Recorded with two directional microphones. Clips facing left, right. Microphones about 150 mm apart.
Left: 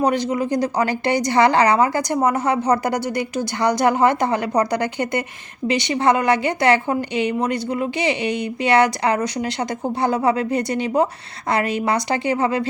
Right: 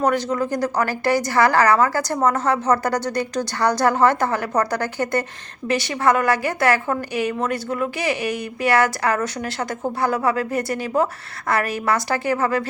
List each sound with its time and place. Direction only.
0.0 s a woman's voice: 15° left (ahead or behind)